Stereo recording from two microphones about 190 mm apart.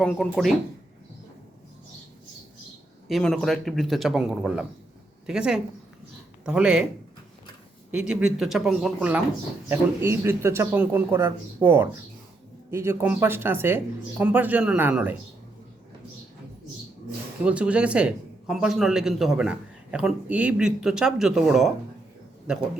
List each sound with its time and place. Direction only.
0.0 s speech: centre (ahead or behind)
3.1 s speech: centre (ahead or behind)
7.9 s speech: 5° right (ahead or behind)
17.4 s speech: 5° right (ahead or behind)